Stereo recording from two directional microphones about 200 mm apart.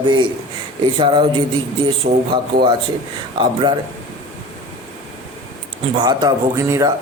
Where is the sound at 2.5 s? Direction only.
50° right (ahead or behind).